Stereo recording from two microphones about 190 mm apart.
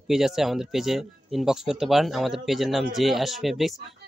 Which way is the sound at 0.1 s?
Centre (ahead or behind).